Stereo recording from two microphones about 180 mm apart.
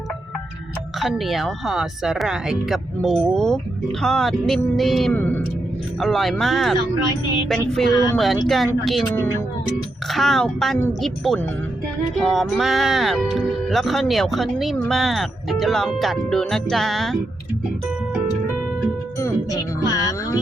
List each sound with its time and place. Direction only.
0.9 s speech: centre (ahead or behind)
10.1 s speech: centre (ahead or behind)
19.2 s music: 20° left (ahead or behind)